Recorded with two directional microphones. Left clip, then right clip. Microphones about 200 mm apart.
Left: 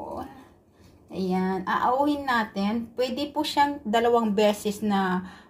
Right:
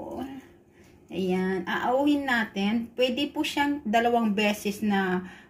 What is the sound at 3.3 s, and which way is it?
Speech, 15° left (ahead or behind).